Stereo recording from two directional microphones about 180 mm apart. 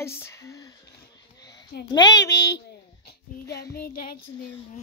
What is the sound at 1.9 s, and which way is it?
Speech, 20° left (ahead or behind).